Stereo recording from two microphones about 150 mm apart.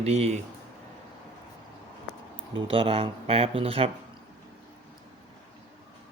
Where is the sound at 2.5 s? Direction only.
35° right (ahead or behind).